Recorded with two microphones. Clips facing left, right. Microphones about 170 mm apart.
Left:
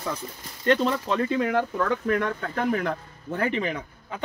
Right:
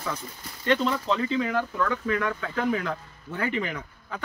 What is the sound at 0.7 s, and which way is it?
Speech, 50° left (ahead or behind).